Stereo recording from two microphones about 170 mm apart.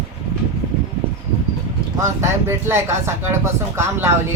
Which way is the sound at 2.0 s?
15° right (ahead or behind).